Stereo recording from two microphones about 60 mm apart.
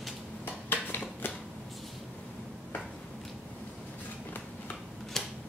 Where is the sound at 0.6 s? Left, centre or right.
Left.